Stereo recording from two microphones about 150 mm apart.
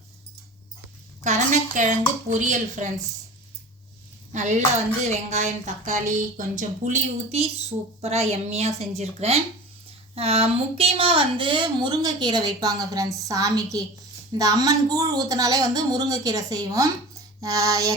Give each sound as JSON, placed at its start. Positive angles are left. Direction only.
{"t": 1.2, "sound": "speech", "side_deg": -55}
{"t": 4.3, "sound": "speech", "side_deg": -55}